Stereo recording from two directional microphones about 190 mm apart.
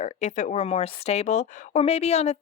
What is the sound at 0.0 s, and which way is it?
A woman's voice, 40° left (ahead or behind).